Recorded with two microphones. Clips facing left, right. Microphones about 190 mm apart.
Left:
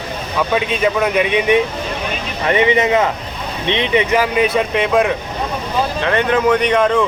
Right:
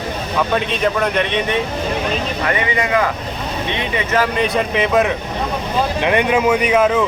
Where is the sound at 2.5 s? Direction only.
25° left (ahead or behind); by 5.1 s centre (ahead or behind).